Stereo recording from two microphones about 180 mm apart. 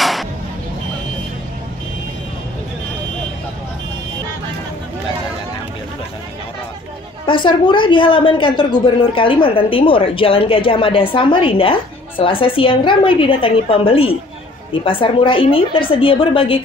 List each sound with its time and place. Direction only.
0.0 s music: centre (ahead or behind)
7.2 s a woman's voice: 25° left (ahead or behind)